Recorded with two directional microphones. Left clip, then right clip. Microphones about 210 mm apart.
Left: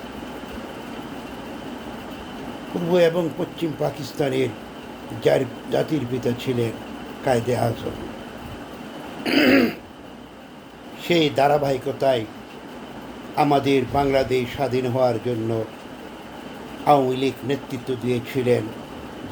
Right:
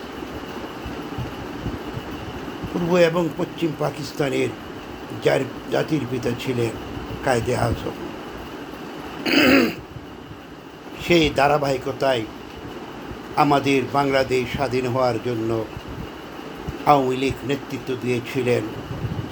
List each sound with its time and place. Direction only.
2.9 s speech: 15° left (ahead or behind)
9.2 s throat clearing: 15° left (ahead or behind)
11.0 s speech: 15° left (ahead or behind)
13.3 s speech: 15° left (ahead or behind)
16.8 s speech: 15° left (ahead or behind)